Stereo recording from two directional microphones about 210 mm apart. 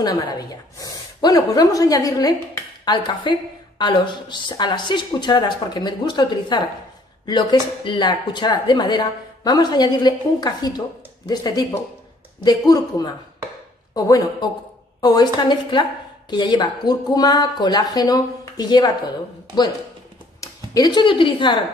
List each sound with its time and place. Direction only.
0.0 s a woman's voice: 20° left (ahead or behind)
20.3 s speech: 20° left (ahead or behind)